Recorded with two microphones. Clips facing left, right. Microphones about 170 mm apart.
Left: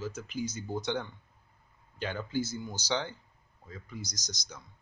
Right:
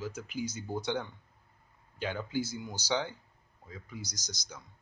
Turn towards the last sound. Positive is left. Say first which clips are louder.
# left 1 dB
turn(degrees=-10)  # may be behind; listen again after turning